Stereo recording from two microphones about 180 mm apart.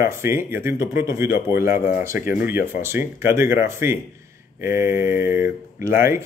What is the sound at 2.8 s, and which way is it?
Speech, 15° right (ahead or behind).